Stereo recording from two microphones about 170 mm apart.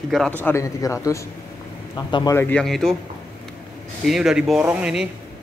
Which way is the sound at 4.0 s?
Centre (ahead or behind).